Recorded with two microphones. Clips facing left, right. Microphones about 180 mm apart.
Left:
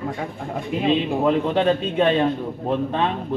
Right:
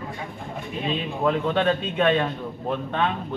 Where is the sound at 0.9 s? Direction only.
30° left (ahead or behind).